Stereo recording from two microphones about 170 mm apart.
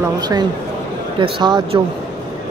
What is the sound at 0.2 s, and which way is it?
A woman's voice, 25° right (ahead or behind).